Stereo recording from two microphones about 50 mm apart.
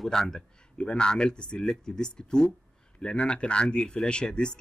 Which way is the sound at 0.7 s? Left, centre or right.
Centre.